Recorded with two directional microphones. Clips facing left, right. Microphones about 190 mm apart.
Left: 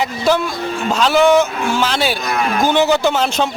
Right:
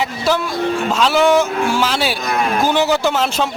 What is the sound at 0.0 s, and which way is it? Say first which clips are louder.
A man's voice: left 2 dB; centre (ahead or behind).